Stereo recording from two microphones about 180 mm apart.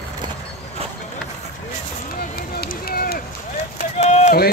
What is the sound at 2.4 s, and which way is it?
Run, 60° left (ahead or behind).